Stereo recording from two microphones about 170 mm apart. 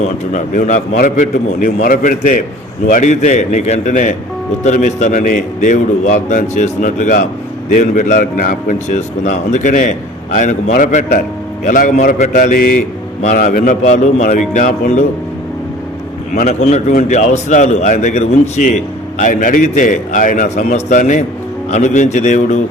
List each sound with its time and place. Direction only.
0.3 s a man's voice: 45° left (ahead or behind)
16.3 s a man's voice: 45° left (ahead or behind)